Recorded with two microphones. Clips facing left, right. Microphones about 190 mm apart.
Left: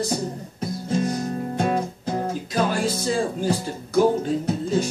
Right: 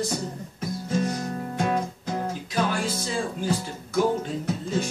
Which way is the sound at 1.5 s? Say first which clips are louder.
Left 1 dB; 35° left (ahead or behind).